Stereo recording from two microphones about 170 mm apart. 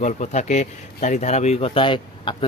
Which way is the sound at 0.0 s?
45° left (ahead or behind).